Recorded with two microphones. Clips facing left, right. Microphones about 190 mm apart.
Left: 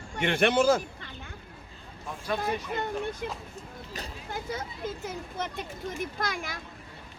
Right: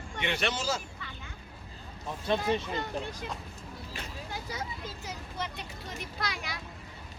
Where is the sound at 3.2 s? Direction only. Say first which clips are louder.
Left 3 dB; 55° left (ahead or behind).